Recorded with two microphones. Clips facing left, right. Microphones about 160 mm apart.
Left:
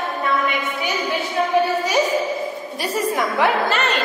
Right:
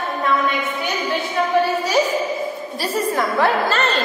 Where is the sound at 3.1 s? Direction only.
15° left (ahead or behind).